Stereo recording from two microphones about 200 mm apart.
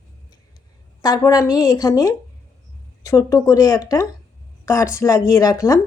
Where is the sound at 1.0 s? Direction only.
20° left (ahead or behind).